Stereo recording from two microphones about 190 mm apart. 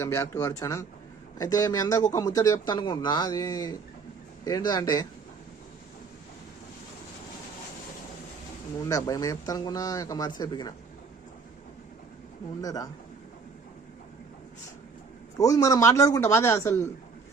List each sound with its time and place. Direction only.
0.0 s a man's voice: 15° left (ahead or behind)
8.8 s speech: 20° left (ahead or behind)
12.6 s speech: 20° left (ahead or behind)
15.4 s a man's voice: 20° left (ahead or behind)